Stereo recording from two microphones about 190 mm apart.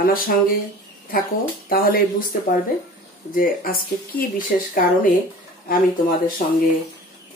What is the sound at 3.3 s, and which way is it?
Speech, 50° left (ahead or behind).